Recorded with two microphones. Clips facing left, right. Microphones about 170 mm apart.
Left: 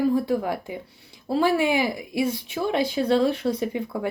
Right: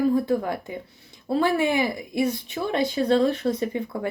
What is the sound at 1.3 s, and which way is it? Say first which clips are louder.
Speech: left 1 dB; 50° right (ahead or behind).